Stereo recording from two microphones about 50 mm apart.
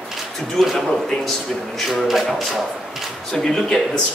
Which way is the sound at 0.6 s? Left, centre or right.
Centre.